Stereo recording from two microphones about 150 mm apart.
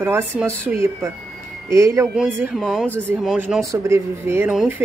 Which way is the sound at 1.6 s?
20° right (ahead or behind).